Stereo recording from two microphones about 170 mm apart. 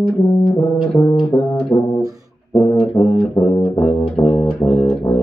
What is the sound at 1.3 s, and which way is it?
Brass instrument, 15° left (ahead or behind).